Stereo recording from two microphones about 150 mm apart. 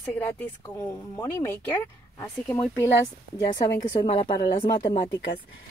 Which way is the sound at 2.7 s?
15° left (ahead or behind).